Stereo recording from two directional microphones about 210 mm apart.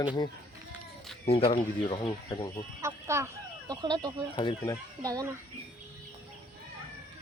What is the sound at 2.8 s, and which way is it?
Speech, 15° right (ahead or behind).